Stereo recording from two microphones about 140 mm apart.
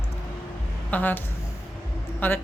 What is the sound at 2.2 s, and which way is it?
Speech, 15° left (ahead or behind).